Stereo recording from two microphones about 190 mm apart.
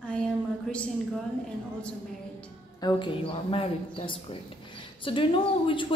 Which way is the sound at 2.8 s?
25° left (ahead or behind).